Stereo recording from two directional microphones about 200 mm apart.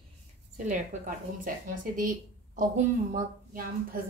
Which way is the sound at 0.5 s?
40° right (ahead or behind).